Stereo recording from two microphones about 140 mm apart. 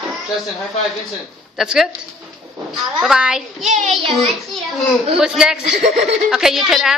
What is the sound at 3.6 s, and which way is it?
Child singing, 60° right (ahead or behind).